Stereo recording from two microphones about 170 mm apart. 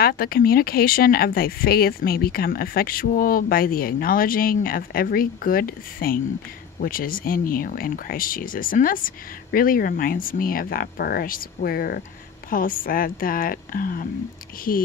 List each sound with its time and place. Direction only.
0.0 s speech: 60° left (ahead or behind)